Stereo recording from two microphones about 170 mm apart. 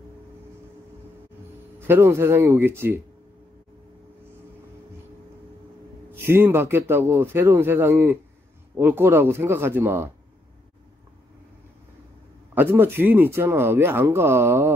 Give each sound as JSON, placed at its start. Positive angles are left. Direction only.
{"t": 1.8, "sound": "speech", "side_deg": -15}
{"t": 6.2, "sound": "speech", "side_deg": -15}
{"t": 12.5, "sound": "speech", "side_deg": -10}